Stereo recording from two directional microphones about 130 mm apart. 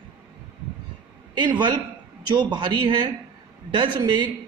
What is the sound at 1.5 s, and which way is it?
Speech, 35° right (ahead or behind).